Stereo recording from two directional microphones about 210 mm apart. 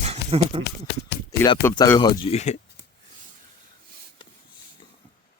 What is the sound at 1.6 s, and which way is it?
Speech, 15° left (ahead or behind).